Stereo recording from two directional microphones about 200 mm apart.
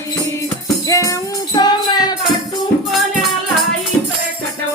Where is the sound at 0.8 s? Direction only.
15° left (ahead or behind).